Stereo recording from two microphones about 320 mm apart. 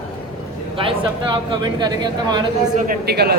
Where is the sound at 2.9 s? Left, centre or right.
Right.